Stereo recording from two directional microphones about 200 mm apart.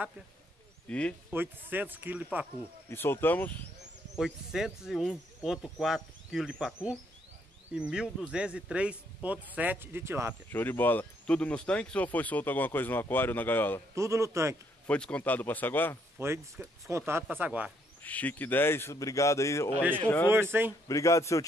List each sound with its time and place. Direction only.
0.8 s speech: 5° left (ahead or behind)
1.3 s speech: 10° right (ahead or behind)
2.9 s speech: 10° left (ahead or behind)
4.2 s speech: centre (ahead or behind)
10.5 s speech: 10° left (ahead or behind)
13.9 s speech: 15° right (ahead or behind)
14.9 s speech: 5° left (ahead or behind)
16.2 s speech: 10° right (ahead or behind)
18.0 s speech: 10° left (ahead or behind)
20.2 s speech: 10° right (ahead or behind)
20.9 s speech: 15° left (ahead or behind)